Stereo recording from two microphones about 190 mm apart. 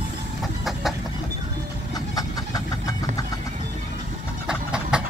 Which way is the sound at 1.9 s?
20° left (ahead or behind).